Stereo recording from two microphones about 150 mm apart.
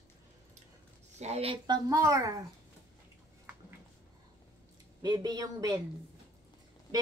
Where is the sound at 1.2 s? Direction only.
45° right (ahead or behind).